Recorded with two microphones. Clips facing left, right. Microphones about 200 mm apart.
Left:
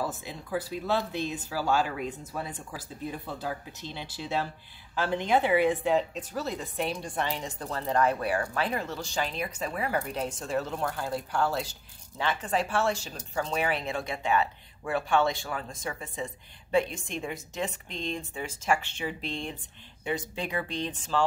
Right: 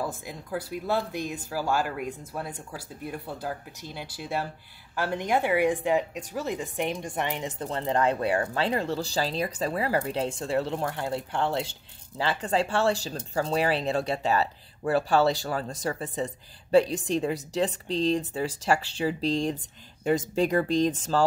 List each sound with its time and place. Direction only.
0.0 s a woman's voice: 10° right (ahead or behind); by 21.3 s 40° right (ahead or behind)